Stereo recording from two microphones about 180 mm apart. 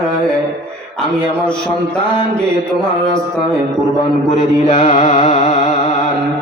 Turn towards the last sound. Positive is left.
turn(degrees=35)  # may be behind; listen again after turning